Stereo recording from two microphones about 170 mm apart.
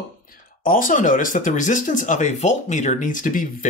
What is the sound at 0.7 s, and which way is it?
Speech, 55° left (ahead or behind).